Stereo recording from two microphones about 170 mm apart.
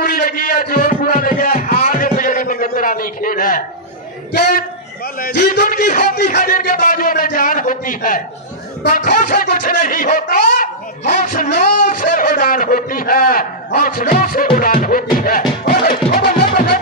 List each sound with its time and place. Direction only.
0.0 s a sound: 55° left (ahead or behind)
4.3 s a man's voice: 60° left (ahead or behind)
15.6 s music: 60° left (ahead or behind)